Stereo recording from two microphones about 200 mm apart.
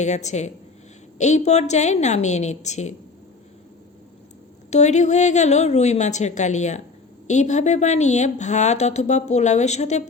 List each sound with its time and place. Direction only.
0.0 s a woman's voice: 35° left (ahead or behind)
4.7 s a woman's voice: 35° left (ahead or behind)